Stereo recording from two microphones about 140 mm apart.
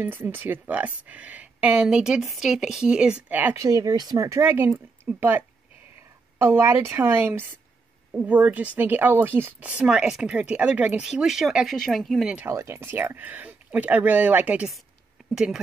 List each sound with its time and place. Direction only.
0.0 s speech: 15° right (ahead or behind)
3.6 s speech: 25° right (ahead or behind); by 12.4 s 5° right (ahead or behind)
12.4 s speech: 20° right (ahead or behind); by 15.6 s 5° right (ahead or behind)